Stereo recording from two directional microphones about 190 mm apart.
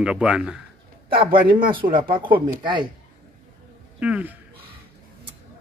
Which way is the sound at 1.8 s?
45° right (ahead or behind).